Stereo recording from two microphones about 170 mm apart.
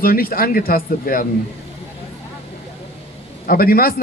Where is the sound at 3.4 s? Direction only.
60° left (ahead or behind).